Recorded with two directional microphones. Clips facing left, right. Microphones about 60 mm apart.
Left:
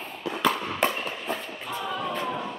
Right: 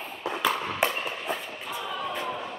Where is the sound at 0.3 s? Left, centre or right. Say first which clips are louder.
Left 2 dB; centre.